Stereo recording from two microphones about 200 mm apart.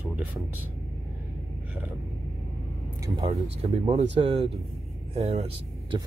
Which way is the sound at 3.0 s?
20° right (ahead or behind).